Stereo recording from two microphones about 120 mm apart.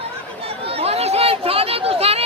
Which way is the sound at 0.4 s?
55° right (ahead or behind).